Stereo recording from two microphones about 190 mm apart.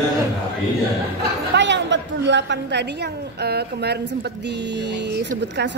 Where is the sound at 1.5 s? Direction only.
70° right (ahead or behind).